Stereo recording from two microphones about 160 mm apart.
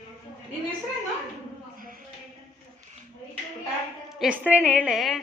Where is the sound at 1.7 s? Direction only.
60° right (ahead or behind).